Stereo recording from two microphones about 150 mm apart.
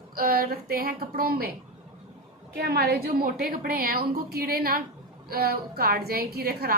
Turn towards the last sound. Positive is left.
turn(degrees=-90)